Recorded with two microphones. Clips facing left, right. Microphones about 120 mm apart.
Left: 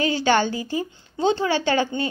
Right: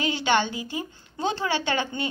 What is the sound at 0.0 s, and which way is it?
A woman's voice, 35° left (ahead or behind).